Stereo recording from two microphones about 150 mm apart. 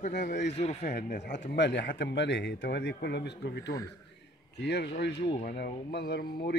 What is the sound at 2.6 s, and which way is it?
A man's voice, 90° left.